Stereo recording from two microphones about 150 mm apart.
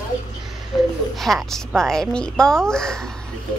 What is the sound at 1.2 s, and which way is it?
A woman's voice, centre (ahead or behind).